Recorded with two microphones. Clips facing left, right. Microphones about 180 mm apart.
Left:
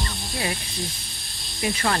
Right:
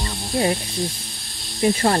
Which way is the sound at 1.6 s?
35° right (ahead or behind).